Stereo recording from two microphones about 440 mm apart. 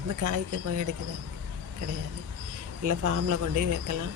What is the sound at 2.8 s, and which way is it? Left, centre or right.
Speech, right.